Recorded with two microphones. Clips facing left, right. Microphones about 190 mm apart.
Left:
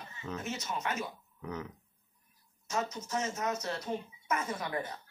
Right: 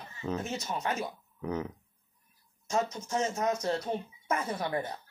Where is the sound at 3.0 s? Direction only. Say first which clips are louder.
Right 4 dB; 30° right (ahead or behind).